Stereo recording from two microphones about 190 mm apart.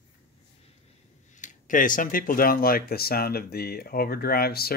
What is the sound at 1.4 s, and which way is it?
Speech, 40° left (ahead or behind).